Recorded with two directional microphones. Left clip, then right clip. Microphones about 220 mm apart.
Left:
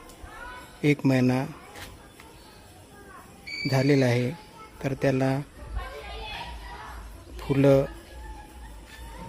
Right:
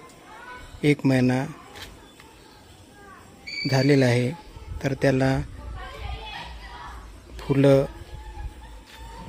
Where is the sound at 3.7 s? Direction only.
10° right (ahead or behind).